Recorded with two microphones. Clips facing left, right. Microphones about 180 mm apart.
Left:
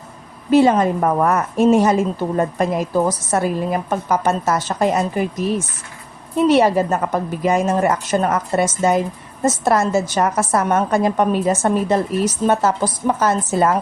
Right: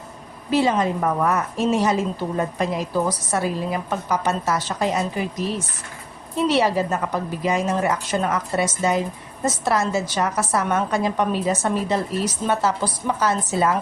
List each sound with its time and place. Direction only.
0.5 s a woman's voice: 50° left (ahead or behind)